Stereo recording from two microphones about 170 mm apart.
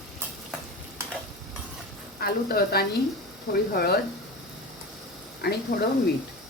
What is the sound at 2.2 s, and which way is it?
A woman's voice, 65° left (ahead or behind).